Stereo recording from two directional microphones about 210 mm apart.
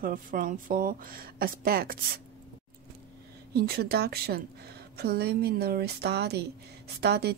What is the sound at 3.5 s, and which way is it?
A woman's voice, 50° right (ahead or behind).